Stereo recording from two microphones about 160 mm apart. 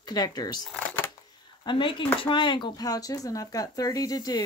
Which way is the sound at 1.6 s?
30° left (ahead or behind).